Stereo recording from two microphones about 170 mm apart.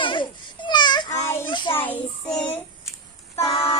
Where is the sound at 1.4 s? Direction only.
25° left (ahead or behind).